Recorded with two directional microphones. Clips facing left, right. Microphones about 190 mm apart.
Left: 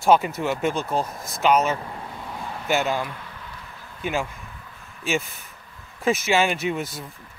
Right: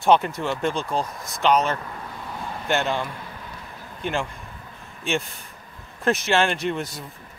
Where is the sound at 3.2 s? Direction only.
35° right (ahead or behind).